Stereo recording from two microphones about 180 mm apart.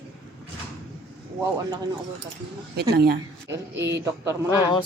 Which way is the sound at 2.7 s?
60° right (ahead or behind).